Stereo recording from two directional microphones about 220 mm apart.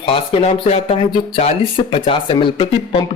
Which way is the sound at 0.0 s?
25° left (ahead or behind).